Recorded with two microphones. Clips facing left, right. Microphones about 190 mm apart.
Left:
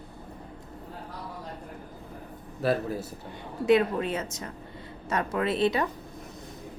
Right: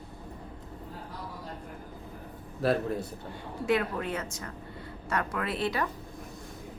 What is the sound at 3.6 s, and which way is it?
A woman's voice, 20° left (ahead or behind).